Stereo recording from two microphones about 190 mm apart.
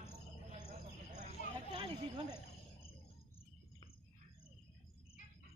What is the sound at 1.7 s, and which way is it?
Snake, 25° right (ahead or behind).